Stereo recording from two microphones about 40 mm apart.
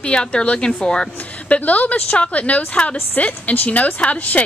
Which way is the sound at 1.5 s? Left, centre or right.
Left.